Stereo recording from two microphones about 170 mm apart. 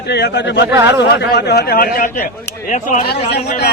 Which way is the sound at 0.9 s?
80° left.